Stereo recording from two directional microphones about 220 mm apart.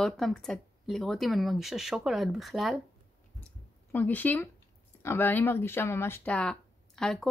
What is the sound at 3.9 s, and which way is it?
A woman's voice, 10° left (ahead or behind).